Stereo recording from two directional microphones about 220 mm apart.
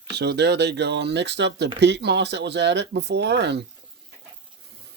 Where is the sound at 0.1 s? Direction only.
50° right (ahead or behind).